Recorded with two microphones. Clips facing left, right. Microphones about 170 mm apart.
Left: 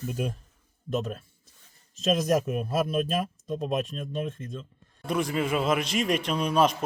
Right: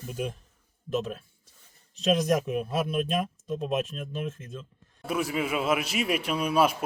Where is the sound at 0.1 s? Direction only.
Centre (ahead or behind).